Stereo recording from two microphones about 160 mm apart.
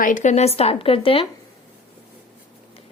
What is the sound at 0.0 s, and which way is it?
A woman's voice, 50° left (ahead or behind).